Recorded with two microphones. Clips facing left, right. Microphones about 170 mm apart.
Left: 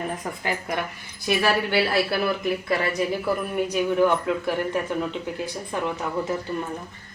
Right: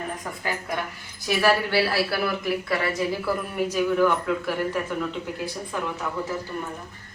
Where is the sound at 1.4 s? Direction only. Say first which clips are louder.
Right 2 dB; 20° left (ahead or behind).